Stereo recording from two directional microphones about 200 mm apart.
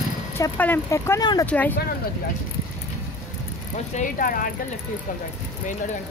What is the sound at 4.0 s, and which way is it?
Speech, 45° left (ahead or behind).